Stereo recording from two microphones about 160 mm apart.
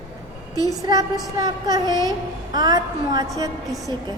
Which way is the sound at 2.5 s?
25° right (ahead or behind).